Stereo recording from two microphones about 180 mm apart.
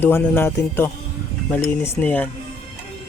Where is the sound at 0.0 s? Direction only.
10° left (ahead or behind).